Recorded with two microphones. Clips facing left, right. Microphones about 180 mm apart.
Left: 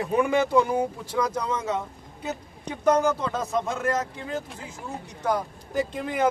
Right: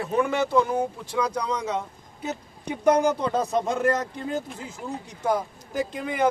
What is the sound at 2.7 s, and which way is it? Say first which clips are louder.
Speech: right 1 dB; 15° right (ahead or behind).